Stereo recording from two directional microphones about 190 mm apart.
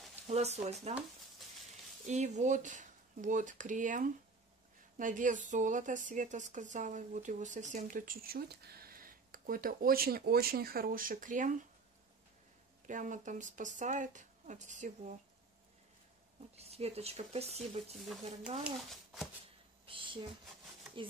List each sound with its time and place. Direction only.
0.3 s speech: 35° right (ahead or behind)
2.0 s a woman's voice: 40° right (ahead or behind)
12.8 s speech: 40° right (ahead or behind)
16.5 s speech: 35° right (ahead or behind)
17.9 s speech: centre (ahead or behind)
19.9 s a sound: 25° right (ahead or behind)